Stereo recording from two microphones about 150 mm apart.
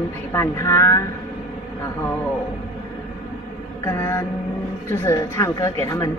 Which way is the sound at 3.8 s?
20° left (ahead or behind).